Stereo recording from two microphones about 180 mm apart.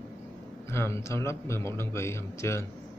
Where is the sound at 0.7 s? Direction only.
15° left (ahead or behind).